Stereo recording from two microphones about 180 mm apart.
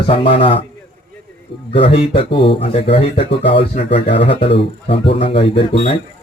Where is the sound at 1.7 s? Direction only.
30° left (ahead or behind).